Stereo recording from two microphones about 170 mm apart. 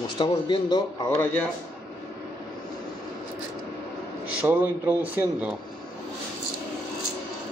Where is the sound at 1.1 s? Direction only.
10° left (ahead or behind).